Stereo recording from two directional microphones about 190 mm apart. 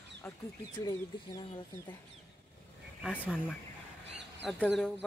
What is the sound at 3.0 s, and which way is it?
Speech, 5° left (ahead or behind).